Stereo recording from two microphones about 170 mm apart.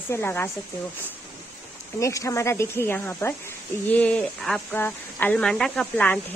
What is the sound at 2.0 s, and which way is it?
Speech, 15° left (ahead or behind).